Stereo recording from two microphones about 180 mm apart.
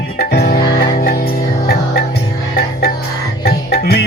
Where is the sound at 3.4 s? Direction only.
60° left (ahead or behind).